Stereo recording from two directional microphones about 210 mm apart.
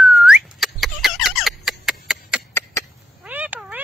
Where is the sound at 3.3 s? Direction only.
10° right (ahead or behind).